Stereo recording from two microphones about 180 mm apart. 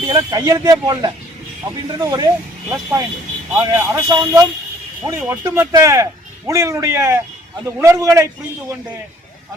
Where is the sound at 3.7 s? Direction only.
20° right (ahead or behind).